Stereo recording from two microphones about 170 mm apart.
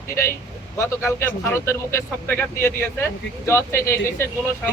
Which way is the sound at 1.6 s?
15° left (ahead or behind).